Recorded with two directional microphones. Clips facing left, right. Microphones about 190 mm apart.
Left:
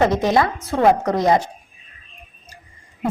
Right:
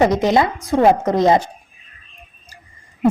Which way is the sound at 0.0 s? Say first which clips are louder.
Right 2 dB; 20° right (ahead or behind).